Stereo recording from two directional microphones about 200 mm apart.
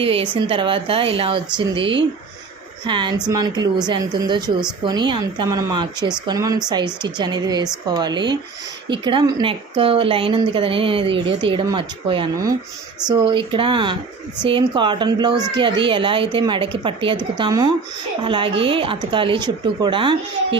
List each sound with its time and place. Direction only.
0.0 s a woman's voice: 25° right (ahead or behind)